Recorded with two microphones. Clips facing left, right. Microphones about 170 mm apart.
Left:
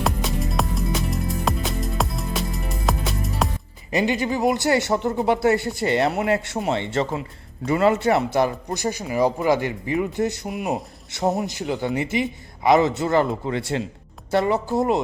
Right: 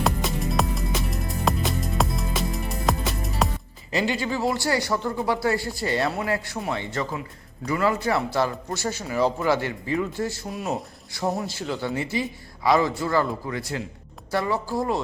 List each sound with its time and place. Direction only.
0.0 s music: centre (ahead or behind)
3.9 s a man's voice: 20° left (ahead or behind)